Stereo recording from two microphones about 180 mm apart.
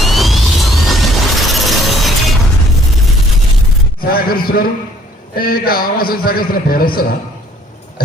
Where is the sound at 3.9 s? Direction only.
55° left (ahead or behind).